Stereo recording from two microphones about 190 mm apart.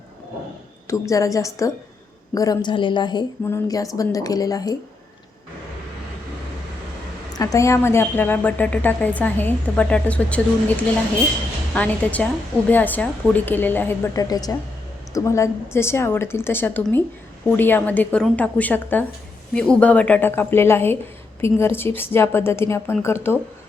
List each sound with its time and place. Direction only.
0.9 s a woman's voice: 15° left (ahead or behind)
7.3 s a woman's voice: 15° left (ahead or behind)
11.7 s a woman's voice: 5° left (ahead or behind)